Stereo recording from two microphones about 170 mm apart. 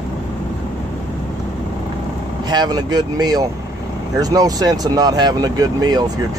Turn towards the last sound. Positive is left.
turn(degrees=-25)  # may be behind; listen again after turning